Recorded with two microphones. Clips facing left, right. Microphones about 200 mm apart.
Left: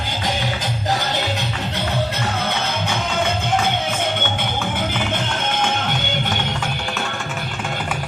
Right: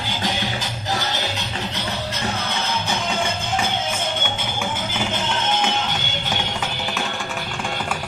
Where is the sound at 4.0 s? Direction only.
60° left (ahead or behind).